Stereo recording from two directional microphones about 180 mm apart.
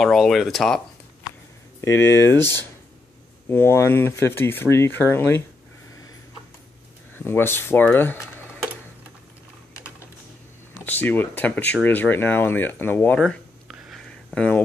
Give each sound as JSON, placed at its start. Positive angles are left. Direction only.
{"t": 0.0, "sound": "speech", "side_deg": 0}
{"t": 1.8, "sound": "speech", "side_deg": 15}
{"t": 3.4, "sound": "speech", "side_deg": 15}
{"t": 7.2, "sound": "speech", "side_deg": 10}
{"t": 10.9, "sound": "speech", "side_deg": 10}